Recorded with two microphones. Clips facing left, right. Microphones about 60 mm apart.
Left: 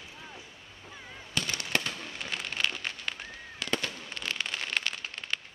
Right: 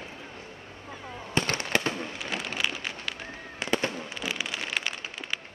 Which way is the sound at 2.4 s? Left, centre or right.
Centre.